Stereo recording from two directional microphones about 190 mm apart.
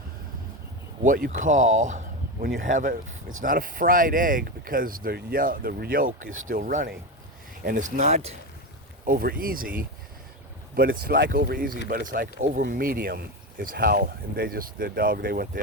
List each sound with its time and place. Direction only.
1.0 s speech: 45° right (ahead or behind)
9.0 s speech: 50° right (ahead or behind)